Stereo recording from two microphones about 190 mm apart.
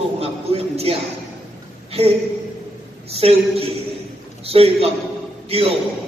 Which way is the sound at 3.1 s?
30° right (ahead or behind).